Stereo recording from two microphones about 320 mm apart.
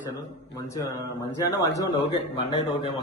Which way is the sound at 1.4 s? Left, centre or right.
Centre.